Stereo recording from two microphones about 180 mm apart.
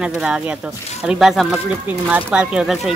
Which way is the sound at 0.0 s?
5° right (ahead or behind).